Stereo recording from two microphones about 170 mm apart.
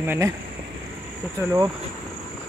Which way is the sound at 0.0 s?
15° right (ahead or behind).